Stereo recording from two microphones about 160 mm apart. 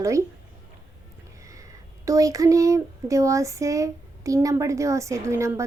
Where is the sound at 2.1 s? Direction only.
20° right (ahead or behind).